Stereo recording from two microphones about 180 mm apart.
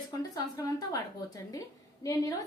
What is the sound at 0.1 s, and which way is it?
A woman's voice, 20° left (ahead or behind).